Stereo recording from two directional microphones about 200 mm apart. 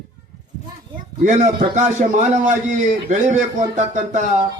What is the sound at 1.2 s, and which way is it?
Music, 35° right (ahead or behind).